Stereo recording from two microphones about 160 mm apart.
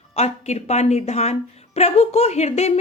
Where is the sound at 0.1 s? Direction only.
45° left (ahead or behind).